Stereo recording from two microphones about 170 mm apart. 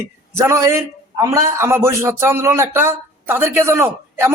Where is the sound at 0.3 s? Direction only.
15° right (ahead or behind).